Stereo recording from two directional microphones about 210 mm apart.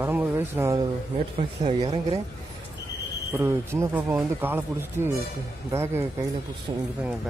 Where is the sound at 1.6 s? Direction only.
30° right (ahead or behind).